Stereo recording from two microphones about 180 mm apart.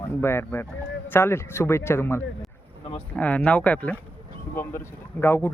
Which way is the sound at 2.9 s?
10° left (ahead or behind).